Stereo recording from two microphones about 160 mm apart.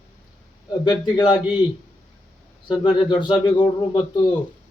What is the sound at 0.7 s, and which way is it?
Speech, 30° left (ahead or behind).